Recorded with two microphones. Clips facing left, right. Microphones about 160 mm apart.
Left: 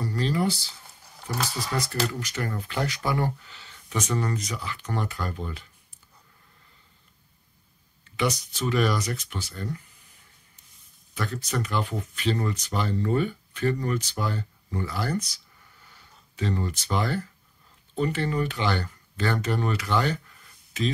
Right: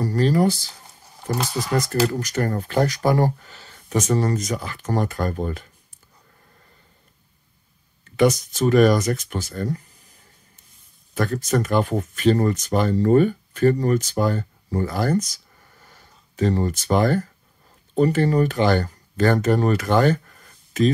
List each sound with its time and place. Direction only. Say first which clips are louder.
0.0 s a sound: right 7 dB; 45° right (ahead or behind)
2.0 s speech: right 8 dB; 45° right (ahead or behind)
8.0 s speech: right 9 dB; 45° right (ahead or behind)